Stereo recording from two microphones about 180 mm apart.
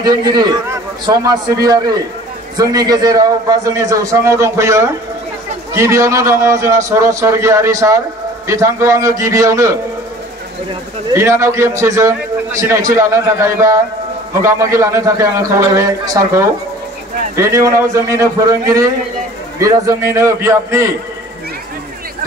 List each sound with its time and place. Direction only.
0.0 s a man's voice: 20° right (ahead or behind)
11.1 s a man's voice: 15° right (ahead or behind)